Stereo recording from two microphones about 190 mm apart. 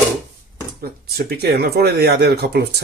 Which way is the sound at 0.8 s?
55° right (ahead or behind).